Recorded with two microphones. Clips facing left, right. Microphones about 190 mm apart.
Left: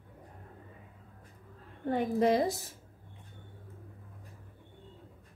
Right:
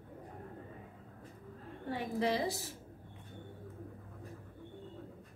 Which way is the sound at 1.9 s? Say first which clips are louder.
Left 7 dB; 50° left (ahead or behind).